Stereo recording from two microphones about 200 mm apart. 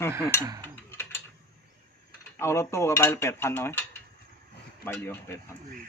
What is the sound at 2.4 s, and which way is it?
Dishes, 15° left (ahead or behind).